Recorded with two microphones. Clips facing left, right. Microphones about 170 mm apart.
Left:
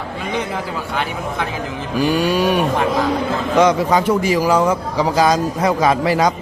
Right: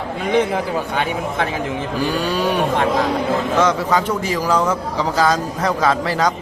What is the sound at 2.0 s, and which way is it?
A man's voice, 10° left (ahead or behind).